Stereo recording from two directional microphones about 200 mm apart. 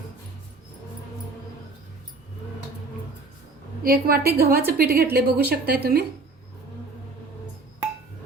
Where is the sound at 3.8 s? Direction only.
50° right (ahead or behind).